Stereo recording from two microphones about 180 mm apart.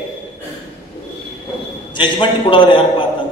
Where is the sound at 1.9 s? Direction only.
25° left (ahead or behind).